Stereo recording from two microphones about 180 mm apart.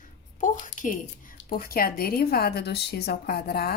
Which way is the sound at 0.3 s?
45° left (ahead or behind).